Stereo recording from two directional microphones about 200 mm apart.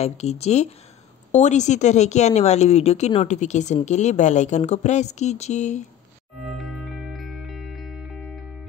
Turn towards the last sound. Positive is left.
turn(degrees=0)  # may be behind; listen again after turning